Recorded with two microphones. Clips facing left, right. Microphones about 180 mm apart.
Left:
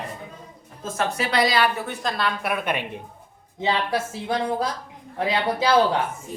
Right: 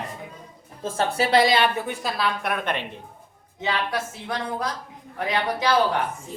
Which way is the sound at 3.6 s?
25° left (ahead or behind).